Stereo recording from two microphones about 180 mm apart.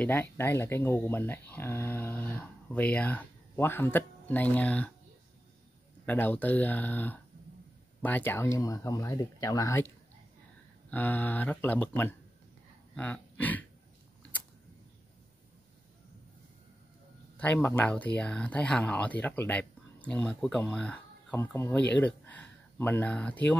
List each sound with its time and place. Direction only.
0.0 s speech: 10° left (ahead or behind)
6.0 s speech: 10° left (ahead or behind)
10.9 s speech: 10° left (ahead or behind)
12.9 s a sound: 10° left (ahead or behind)
17.4 s speech: 10° left (ahead or behind)